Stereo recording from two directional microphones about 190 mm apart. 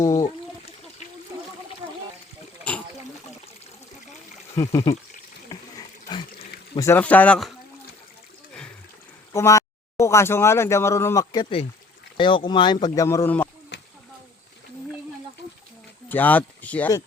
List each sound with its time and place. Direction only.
0.0 s speech: 15° left (ahead or behind)
4.5 s speech: 15° left (ahead or behind)
5.5 s a sound: 20° left (ahead or behind)
6.7 s speech: 15° left (ahead or behind)
9.3 s speech: 15° left (ahead or behind)
13.7 s a sound: 65° left (ahead or behind)
16.0 s speech: 10° left (ahead or behind)